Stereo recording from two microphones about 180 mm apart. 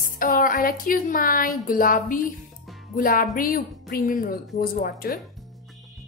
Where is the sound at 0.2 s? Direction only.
50° left (ahead or behind).